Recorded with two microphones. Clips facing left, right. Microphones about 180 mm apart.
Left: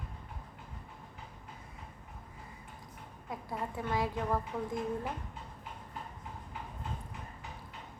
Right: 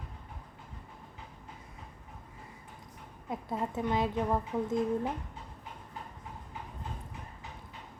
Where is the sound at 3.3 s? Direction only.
20° right (ahead or behind).